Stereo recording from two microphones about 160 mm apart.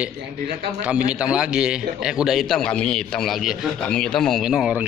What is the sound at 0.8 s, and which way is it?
A man's voice, 10° right (ahead or behind).